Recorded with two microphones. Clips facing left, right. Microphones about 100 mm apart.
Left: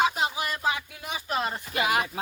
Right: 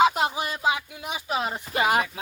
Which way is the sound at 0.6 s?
10° right (ahead or behind).